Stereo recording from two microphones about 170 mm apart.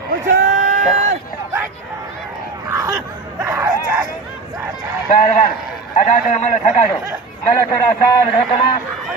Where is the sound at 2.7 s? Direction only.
20° right (ahead or behind).